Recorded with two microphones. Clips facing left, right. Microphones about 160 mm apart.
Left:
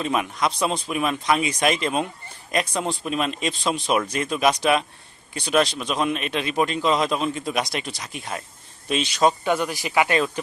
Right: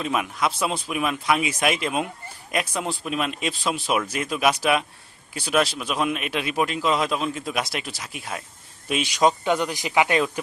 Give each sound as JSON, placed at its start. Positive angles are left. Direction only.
{"t": 0.0, "sound": "speech", "side_deg": -5}